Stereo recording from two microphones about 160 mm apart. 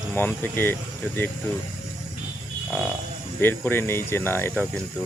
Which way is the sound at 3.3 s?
15° left (ahead or behind).